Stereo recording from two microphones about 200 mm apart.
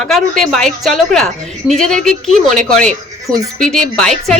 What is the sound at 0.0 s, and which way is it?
A woman's voice, centre (ahead or behind).